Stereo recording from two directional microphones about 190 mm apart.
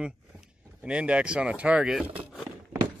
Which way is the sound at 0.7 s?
5° right (ahead or behind).